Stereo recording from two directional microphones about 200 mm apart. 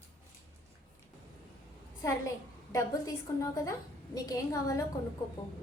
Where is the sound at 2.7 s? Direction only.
15° left (ahead or behind).